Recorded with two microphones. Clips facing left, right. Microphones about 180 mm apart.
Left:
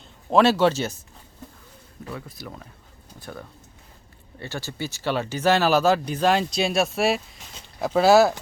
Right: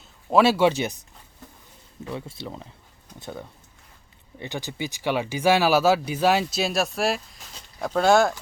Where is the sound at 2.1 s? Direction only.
25° right (ahead or behind).